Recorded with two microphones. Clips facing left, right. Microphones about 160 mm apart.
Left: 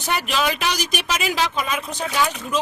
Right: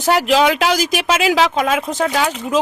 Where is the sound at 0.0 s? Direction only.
90° right.